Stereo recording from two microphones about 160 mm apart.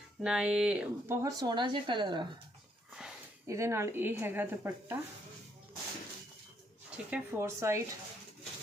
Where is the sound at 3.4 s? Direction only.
20° right (ahead or behind).